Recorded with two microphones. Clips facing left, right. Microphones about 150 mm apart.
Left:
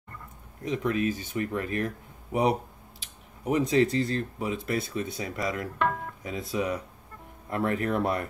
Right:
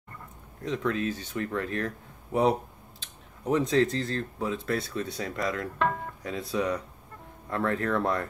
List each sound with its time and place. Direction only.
0.7 s speech: 15° left (ahead or behind)
3.0 s speech: 10° left (ahead or behind)